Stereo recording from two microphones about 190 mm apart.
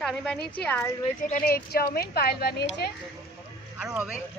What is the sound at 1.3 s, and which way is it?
Speech, 50° left (ahead or behind).